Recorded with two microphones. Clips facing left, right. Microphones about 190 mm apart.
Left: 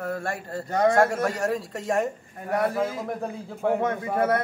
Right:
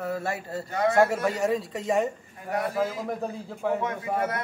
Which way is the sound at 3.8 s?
55° left (ahead or behind).